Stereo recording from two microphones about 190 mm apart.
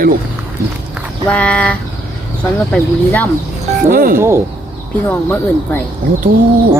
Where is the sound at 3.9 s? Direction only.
50° right (ahead or behind).